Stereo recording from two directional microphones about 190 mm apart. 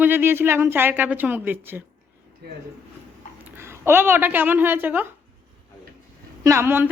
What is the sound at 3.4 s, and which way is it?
A woman's voice, 10° right (ahead or behind).